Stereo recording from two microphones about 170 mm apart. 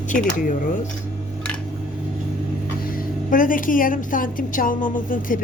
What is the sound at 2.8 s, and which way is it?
A woman's voice, 55° left (ahead or behind).